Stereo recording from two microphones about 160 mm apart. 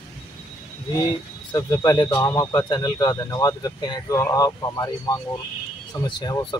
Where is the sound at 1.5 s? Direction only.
20° left (ahead or behind).